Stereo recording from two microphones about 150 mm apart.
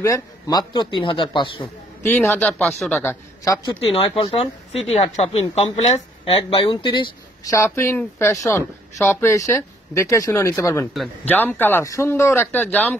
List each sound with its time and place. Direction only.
0.0 s a man's voice: 25° left (ahead or behind)
2.0 s speech: 10° left (ahead or behind)
3.0 s a man's voice: 15° left (ahead or behind)
3.8 s a man's voice: 40° left (ahead or behind)
6.5 s a woman's voice: 35° left (ahead or behind); by 12.9 s 10° left (ahead or behind)